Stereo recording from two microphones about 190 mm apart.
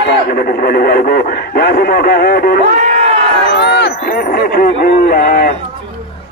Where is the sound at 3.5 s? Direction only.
65° left (ahead or behind); by 5.5 s 50° left (ahead or behind).